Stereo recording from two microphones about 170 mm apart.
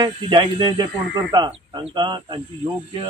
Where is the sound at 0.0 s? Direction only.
30° right (ahead or behind).